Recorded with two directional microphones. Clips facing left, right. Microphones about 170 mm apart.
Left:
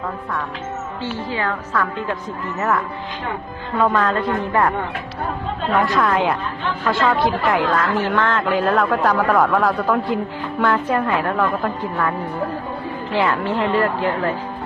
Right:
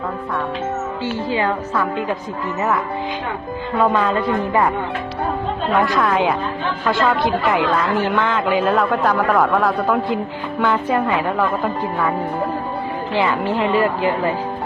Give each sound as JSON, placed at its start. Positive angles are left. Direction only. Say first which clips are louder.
{"t": 1.3, "sound": "a woman's voice", "louder": "right 4 dB", "side_deg": -20}
{"t": 3.8, "sound": "a woman's voice", "louder": "right 1 dB", "side_deg": -5}
{"t": 13.1, "sound": "a woman's voice", "louder": "even", "side_deg": 0}